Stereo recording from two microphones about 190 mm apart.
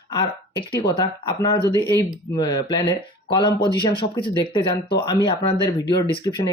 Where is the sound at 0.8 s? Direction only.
25° left (ahead or behind).